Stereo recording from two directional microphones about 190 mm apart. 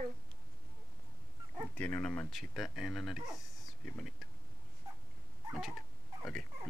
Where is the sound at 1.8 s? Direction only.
10° left (ahead or behind).